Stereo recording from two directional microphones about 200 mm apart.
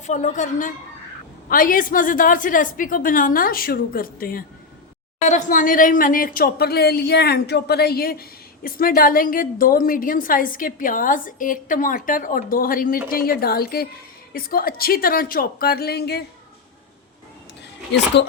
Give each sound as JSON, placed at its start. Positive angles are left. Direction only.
{"t": 0.0, "sound": "a woman's voice", "side_deg": 35}